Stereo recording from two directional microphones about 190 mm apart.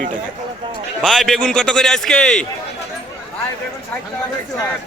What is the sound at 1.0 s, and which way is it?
A man's voice, centre (ahead or behind).